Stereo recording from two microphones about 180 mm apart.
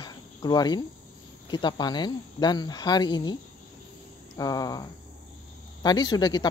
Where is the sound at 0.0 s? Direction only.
20° left (ahead or behind).